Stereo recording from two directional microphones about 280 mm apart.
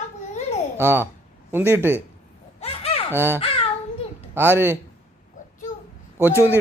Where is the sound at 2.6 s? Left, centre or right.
Left.